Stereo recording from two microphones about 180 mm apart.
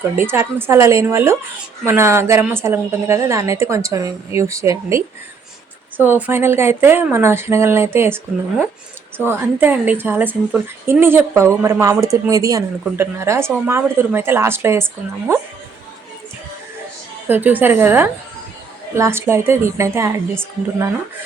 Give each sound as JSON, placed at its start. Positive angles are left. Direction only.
{"t": 0.2, "sound": "a woman's voice", "side_deg": -15}
{"t": 6.1, "sound": "a woman's voice", "side_deg": -10}
{"t": 17.2, "sound": "a woman's voice", "side_deg": -10}